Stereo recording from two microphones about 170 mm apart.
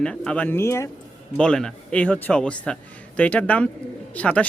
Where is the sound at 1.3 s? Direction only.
5° left (ahead or behind).